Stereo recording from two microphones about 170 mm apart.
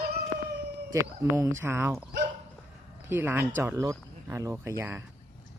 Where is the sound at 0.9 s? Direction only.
15° right (ahead or behind).